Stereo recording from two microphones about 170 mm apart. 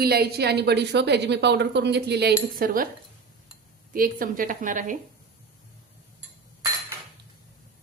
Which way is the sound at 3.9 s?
55° right (ahead or behind).